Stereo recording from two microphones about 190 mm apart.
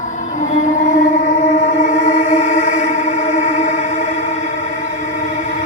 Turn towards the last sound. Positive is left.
turn(degrees=40)  # may be behind; listen again after turning